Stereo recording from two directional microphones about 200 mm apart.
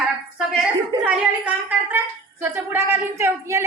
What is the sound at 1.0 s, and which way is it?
A woman's voice, 10° right (ahead or behind).